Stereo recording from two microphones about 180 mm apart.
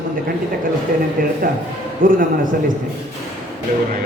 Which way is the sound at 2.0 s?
50° right (ahead or behind).